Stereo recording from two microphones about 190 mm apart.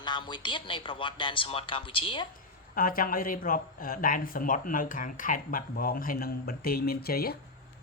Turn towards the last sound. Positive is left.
turn(degrees=55)  # may be behind; listen again after turning